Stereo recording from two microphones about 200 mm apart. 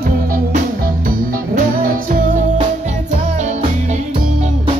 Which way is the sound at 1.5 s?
45° right (ahead or behind).